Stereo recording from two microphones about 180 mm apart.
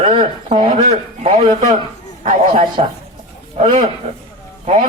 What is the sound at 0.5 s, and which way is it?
Speech, 40° right (ahead or behind).